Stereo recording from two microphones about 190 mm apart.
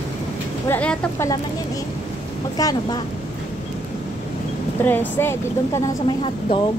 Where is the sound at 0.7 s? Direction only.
10° left (ahead or behind).